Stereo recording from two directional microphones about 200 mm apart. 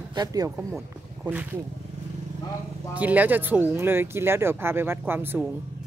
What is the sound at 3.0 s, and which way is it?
Speech, 10° right (ahead or behind).